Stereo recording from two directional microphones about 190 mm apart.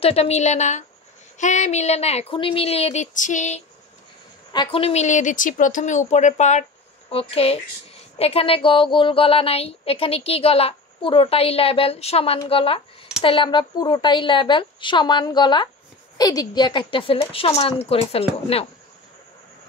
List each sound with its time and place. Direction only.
0.0 s a woman's voice: 35° left (ahead or behind)
4.5 s a woman's voice: 25° left (ahead or behind)